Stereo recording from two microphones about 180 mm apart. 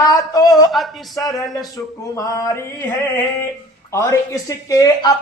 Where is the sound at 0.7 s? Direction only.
Centre (ahead or behind); by 2.9 s 15° left (ahead or behind).